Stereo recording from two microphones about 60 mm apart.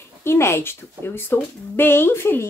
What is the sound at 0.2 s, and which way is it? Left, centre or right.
Speech, left.